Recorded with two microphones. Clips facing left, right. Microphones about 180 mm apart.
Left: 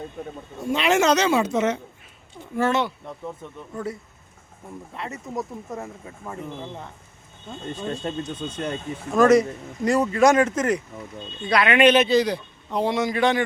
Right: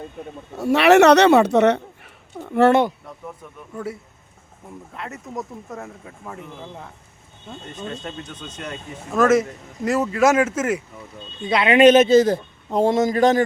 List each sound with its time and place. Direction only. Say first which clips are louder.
0.6 s speech: right 8 dB; 70° right (ahead or behind)
3.4 s speech: left 3 dB; 25° left (ahead or behind)
4.9 s speech: left 1 dB; centre (ahead or behind)
8.0 s speech: left 5 dB; 30° left (ahead or behind)
9.1 s speech: left 1 dB; centre (ahead or behind)
11.4 s speech: right 2 dB; 25° right (ahead or behind)
11.8 s a man's voice: right 6 dB; 45° right (ahead or behind)